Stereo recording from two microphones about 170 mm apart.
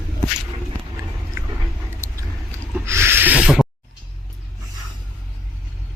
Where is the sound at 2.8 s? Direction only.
15° right (ahead or behind).